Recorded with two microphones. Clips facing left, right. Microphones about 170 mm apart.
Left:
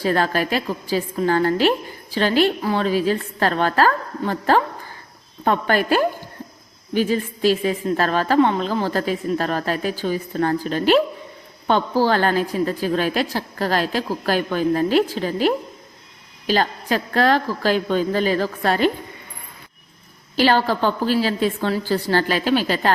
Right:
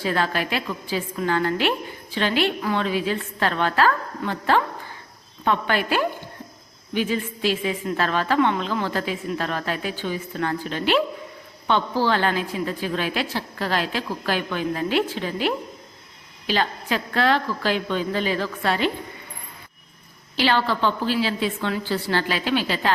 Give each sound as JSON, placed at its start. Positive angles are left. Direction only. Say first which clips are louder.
{"t": 0.0, "sound": "a woman's voice", "louder": "left 4 dB", "side_deg": 40}
{"t": 20.3, "sound": "a woman's voice", "louder": "left 4 dB", "side_deg": 45}